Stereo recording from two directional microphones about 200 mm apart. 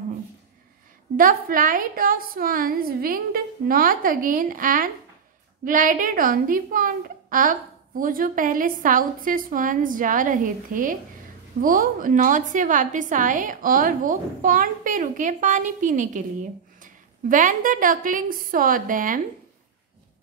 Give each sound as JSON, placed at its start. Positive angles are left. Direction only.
{"t": 1.1, "sound": "a woman's voice", "side_deg": -45}